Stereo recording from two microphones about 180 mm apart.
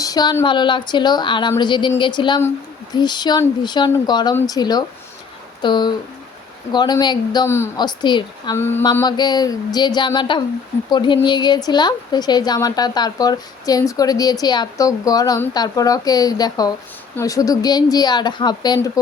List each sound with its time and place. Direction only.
0.0 s a woman's voice: 20° left (ahead or behind)
8.5 s mantra: 15° left (ahead or behind)
8.8 s a woman's voice: 25° left (ahead or behind)